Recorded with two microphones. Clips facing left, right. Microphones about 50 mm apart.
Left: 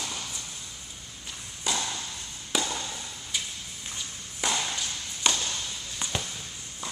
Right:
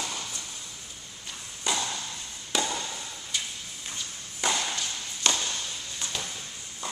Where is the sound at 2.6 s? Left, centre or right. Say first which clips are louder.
Right 1 dB; centre.